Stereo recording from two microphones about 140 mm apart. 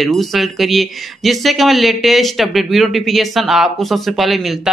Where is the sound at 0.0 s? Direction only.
Centre (ahead or behind).